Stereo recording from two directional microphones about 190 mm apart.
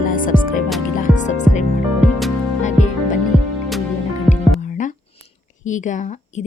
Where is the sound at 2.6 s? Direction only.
40° left (ahead or behind).